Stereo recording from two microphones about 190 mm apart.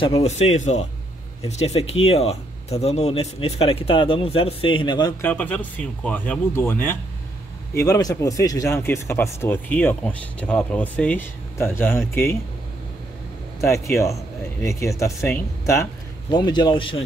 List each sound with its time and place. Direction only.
0.0 s speech: 30° left (ahead or behind)
5.2 s speech: 10° left (ahead or behind)
13.6 s speech: 15° left (ahead or behind)